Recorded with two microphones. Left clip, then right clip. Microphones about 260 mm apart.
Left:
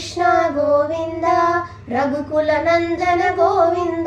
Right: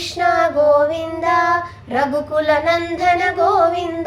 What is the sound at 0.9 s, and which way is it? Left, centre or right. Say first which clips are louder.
Child singing: even; right.